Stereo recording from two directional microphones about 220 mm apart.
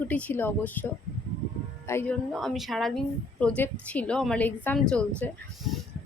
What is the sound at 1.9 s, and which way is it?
Speech, 10° left (ahead or behind).